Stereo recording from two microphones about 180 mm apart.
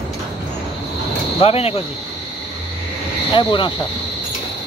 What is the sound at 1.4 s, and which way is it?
Speech, 35° left (ahead or behind).